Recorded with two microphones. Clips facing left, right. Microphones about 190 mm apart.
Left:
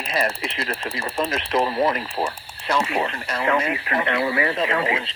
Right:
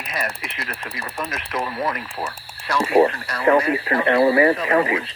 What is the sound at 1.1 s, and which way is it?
Speech, 25° left (ahead or behind).